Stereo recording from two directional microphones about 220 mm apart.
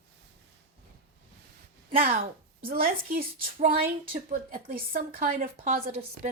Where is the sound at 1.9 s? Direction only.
40° right (ahead or behind).